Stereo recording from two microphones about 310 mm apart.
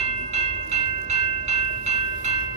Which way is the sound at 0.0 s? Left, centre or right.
Right.